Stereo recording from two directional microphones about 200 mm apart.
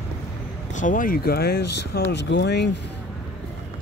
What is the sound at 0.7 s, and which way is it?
Speech, 40° left (ahead or behind).